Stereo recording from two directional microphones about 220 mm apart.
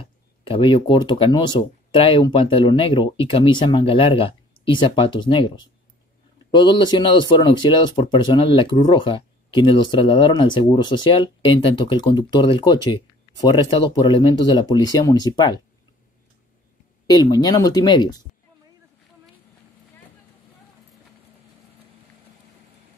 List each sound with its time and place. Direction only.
0.0 s speech: 25° left (ahead or behind)
17.1 s speech: 20° left (ahead or behind)